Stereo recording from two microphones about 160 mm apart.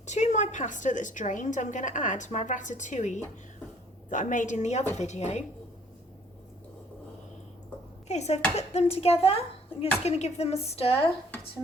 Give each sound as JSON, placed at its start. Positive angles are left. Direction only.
{"t": 0.0, "sound": "a woman's voice", "side_deg": 45}
{"t": 8.0, "sound": "speech", "side_deg": 45}